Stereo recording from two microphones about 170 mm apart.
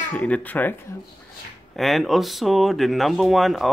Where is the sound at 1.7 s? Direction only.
Centre (ahead or behind).